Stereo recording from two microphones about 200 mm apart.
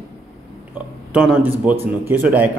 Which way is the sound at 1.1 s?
5° right (ahead or behind).